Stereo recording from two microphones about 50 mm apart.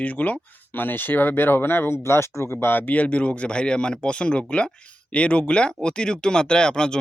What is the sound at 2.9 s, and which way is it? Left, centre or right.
Speech, left.